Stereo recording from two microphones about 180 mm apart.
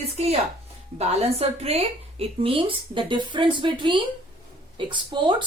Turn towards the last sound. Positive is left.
turn(degrees=-25)  # may be behind; listen again after turning